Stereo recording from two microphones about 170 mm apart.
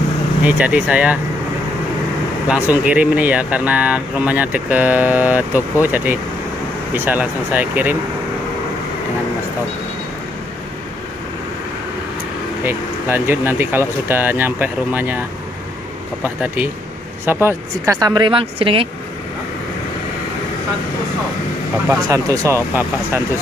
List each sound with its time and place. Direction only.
0.4 s speech: 10° right (ahead or behind)
2.4 s speech: 10° right (ahead or behind)
12.6 s speech: 15° right (ahead or behind)
17.3 s a woman's voice: 15° right (ahead or behind); by 18.9 s 30° right (ahead or behind)
21.8 s a woman's voice: 20° right (ahead or behind)